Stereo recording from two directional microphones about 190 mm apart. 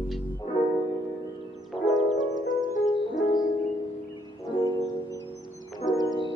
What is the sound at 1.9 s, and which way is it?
Music, centre (ahead or behind).